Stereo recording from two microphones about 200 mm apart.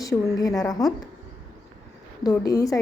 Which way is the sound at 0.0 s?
15° left (ahead or behind).